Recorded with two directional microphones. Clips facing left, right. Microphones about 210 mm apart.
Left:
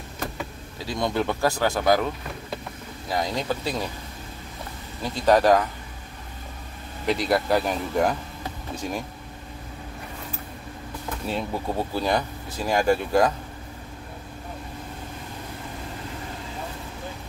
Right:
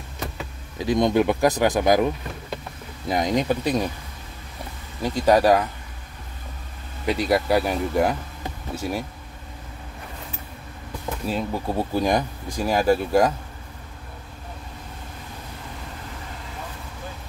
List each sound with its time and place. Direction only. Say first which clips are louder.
0.7 s speech: right 7 dB; 20° right (ahead or behind)
3.1 s speech: right 5 dB; 20° right (ahead or behind)
5.0 s speech: right 1 dB; 10° right (ahead or behind)
7.1 s speech: right 1 dB; 10° right (ahead or behind)
11.2 s speech: right 2 dB; centre (ahead or behind)
11.9 s speech: right 4 dB; 15° right (ahead or behind)